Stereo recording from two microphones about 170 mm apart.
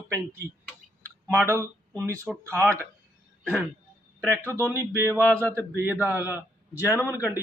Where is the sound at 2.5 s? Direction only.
15° right (ahead or behind).